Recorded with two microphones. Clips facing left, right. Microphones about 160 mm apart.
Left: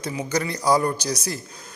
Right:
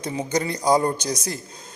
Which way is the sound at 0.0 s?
25° right (ahead or behind).